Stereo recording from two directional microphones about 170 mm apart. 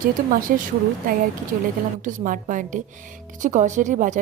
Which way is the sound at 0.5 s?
60° right (ahead or behind).